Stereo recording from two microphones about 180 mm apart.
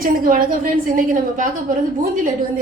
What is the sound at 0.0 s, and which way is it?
A woman's voice, 50° right (ahead or behind).